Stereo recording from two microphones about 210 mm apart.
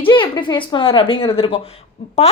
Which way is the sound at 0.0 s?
20° left (ahead or behind).